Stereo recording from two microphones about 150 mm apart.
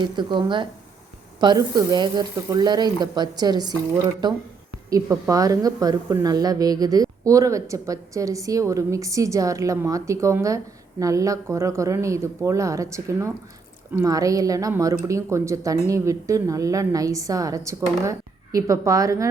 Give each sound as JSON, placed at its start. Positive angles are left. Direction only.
{"t": 0.0, "sound": "a woman's voice", "side_deg": -30}